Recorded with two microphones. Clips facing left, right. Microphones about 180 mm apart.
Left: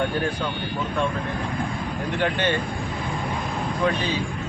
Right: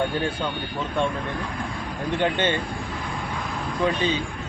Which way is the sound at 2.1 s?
25° right (ahead or behind).